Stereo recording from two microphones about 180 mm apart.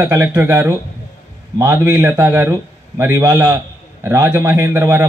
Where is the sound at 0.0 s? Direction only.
15° right (ahead or behind).